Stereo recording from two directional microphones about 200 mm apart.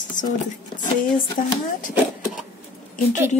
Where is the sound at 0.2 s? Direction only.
40° left (ahead or behind).